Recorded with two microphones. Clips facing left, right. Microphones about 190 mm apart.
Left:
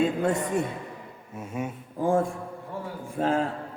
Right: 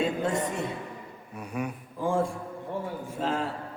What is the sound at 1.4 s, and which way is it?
Speech, 25° left (ahead or behind).